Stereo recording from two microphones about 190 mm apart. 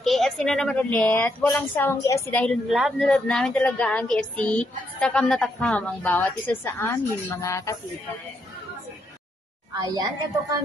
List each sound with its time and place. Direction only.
0.0 s speech: centre (ahead or behind)
2.7 s speech: centre (ahead or behind)
9.8 s a woman's voice: 20° right (ahead or behind)